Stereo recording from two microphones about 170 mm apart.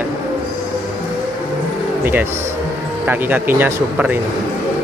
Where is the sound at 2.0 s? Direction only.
10° right (ahead or behind).